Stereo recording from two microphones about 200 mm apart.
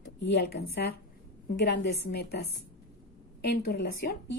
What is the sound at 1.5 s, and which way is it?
Speech, 55° left (ahead or behind).